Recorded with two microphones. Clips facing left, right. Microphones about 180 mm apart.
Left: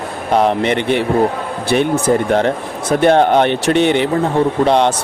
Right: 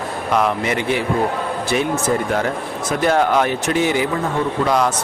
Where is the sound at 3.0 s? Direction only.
30° left (ahead or behind).